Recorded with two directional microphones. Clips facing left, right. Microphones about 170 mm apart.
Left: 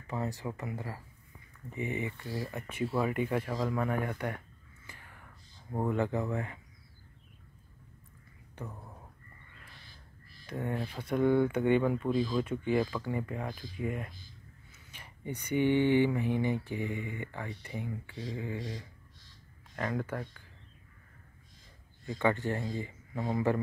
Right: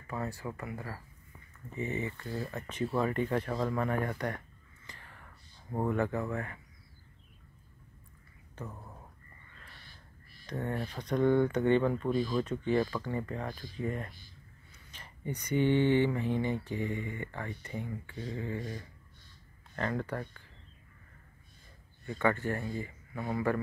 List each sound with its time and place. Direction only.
0.0 s speech: 20° left (ahead or behind)
4.8 s whispering: 10° left (ahead or behind)
5.9 s speech: 15° left (ahead or behind)
8.6 s speech: 15° left (ahead or behind)
10.4 s speech: 10° left (ahead or behind)
19.7 s speech: 5° left (ahead or behind)
22.0 s speech: 15° left (ahead or behind)